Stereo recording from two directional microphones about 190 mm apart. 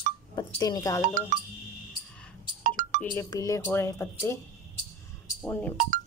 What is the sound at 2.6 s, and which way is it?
Music, 45° right (ahead or behind).